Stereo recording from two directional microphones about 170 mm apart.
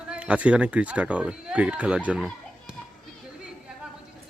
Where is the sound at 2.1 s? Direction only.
5° right (ahead or behind).